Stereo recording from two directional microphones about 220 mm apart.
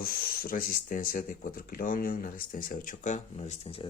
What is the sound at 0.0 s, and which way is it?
Speech, 40° left (ahead or behind).